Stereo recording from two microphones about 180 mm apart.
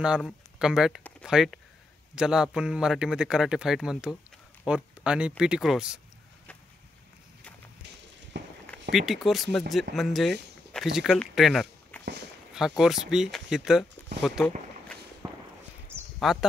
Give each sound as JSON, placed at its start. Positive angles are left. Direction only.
{"t": 0.0, "sound": "speech", "side_deg": -5}
{"t": 8.3, "sound": "a sound", "side_deg": -75}
{"t": 8.9, "sound": "speech", "side_deg": 0}
{"t": 11.9, "sound": "walk", "side_deg": 10}
{"t": 12.5, "sound": "speech", "side_deg": 0}
{"t": 15.2, "sound": "walk", "side_deg": -20}
{"t": 16.2, "sound": "speech", "side_deg": 0}